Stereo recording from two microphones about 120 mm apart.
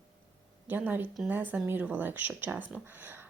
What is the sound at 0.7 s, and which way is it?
Speech, 15° right (ahead or behind).